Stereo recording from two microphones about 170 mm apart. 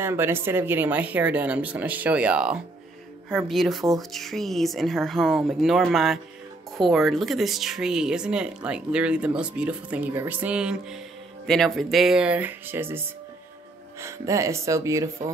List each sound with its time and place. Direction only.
0.0 s speech: 15° right (ahead or behind)